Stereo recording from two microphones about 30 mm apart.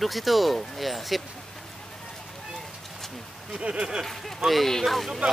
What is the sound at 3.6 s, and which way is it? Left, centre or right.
Speech, right.